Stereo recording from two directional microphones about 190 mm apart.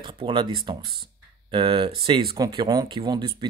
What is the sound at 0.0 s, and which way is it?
Speech, 25° right (ahead or behind).